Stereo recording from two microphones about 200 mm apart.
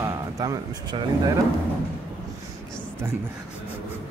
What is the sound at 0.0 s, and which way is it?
Speech, 15° right (ahead or behind).